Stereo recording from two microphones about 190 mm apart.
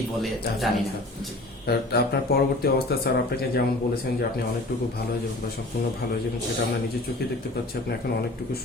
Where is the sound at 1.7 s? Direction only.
55° left (ahead or behind).